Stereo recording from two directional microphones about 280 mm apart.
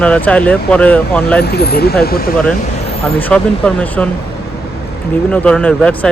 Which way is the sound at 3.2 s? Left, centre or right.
Centre.